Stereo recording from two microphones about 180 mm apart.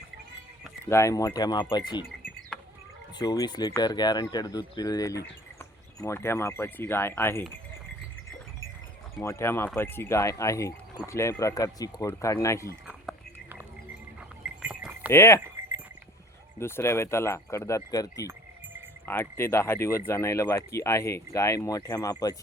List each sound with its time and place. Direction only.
0.9 s speech: 15° left (ahead or behind)
2.5 s a sound: 5° left (ahead or behind)
3.2 s speech: 25° left (ahead or behind)
9.2 s speech: 15° left (ahead or behind)
12.9 s whispering: 5° right (ahead or behind)
14.6 s sheep: 5° right (ahead or behind)
15.1 s speech: 15° left (ahead or behind)
16.6 s speech: 15° left (ahead or behind)